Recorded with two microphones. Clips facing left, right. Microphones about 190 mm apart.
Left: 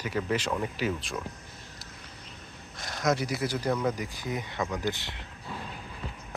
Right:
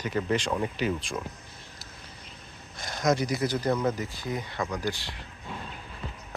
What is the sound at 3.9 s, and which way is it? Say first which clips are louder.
Speech: right 1 dB; 15° left (ahead or behind).